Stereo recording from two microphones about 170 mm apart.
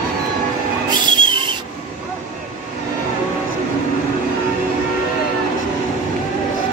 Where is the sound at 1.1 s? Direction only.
30° right (ahead or behind).